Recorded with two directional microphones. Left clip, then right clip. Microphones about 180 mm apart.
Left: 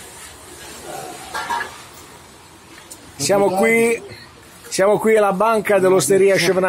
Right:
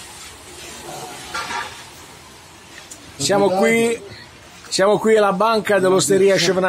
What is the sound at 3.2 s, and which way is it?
A man's voice, 10° left (ahead or behind).